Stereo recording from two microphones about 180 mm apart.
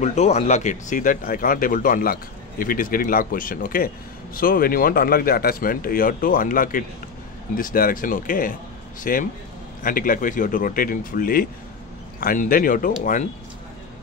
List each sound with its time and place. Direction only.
0.0 s speech: 40° left (ahead or behind)